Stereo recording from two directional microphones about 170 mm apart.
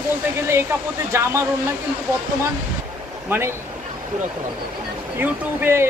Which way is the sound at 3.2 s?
15° right (ahead or behind).